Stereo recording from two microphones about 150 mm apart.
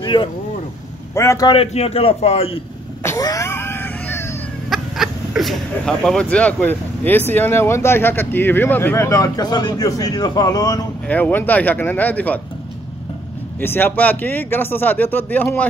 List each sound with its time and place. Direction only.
0.0 s a sound: 30° left (ahead or behind)
1.1 s a man's voice: 20° left (ahead or behind)
1.5 s a man's voice: 40° left (ahead or behind)
3.0 s a sound: 20° left (ahead or behind)
4.6 s speech: centre (ahead or behind); by 10.9 s 25° left (ahead or behind)
11.1 s speech: 10° left (ahead or behind)
13.6 s speech: 15° left (ahead or behind)